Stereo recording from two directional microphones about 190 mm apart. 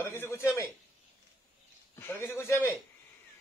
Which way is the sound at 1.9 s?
15° left (ahead or behind).